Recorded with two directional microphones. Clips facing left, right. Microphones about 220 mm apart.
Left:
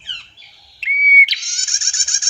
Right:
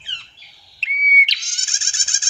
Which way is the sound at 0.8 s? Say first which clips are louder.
Left 3 dB; 10° left (ahead or behind).